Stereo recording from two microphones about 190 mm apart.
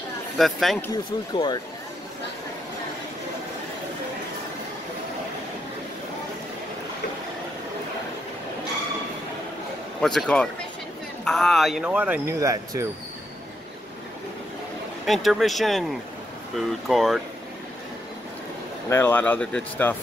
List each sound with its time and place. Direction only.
0.4 s speech: centre (ahead or behind)
1.3 s speech: 25° left (ahead or behind)
10.0 s speech: 5° left (ahead or behind); by 12.8 s 15° right (ahead or behind)
15.0 s speech: centre (ahead or behind)
18.9 s speech: 10° left (ahead or behind)